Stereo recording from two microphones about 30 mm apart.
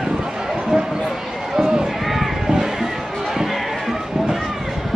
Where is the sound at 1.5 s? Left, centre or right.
Right.